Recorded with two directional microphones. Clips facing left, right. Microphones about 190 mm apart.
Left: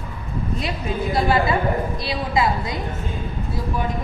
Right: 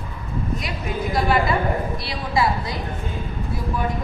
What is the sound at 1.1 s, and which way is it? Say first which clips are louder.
A woman's voice: left 1 dB; 25° left (ahead or behind).